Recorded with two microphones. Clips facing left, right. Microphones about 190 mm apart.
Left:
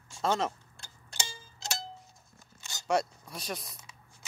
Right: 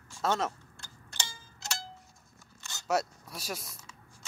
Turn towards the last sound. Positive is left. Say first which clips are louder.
# left 1 dB
turn(degrees=-5)  # may be behind; listen again after turning